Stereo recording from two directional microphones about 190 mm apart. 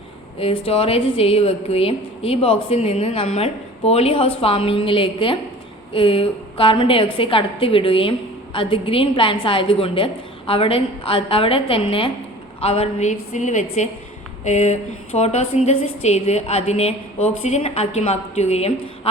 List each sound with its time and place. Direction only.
0.3 s a woman's voice: 30° left (ahead or behind)